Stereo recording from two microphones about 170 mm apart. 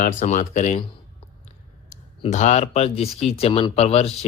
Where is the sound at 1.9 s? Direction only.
45° left (ahead or behind).